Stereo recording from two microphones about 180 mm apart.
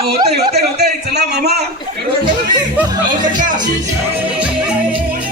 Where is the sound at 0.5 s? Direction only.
65° right (ahead or behind).